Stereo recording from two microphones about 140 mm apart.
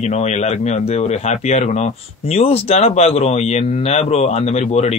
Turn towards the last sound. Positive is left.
turn(degrees=50)  # may be behind; listen again after turning